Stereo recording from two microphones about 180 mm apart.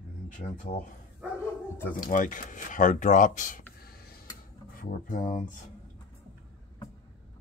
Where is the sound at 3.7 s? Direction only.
55° left (ahead or behind).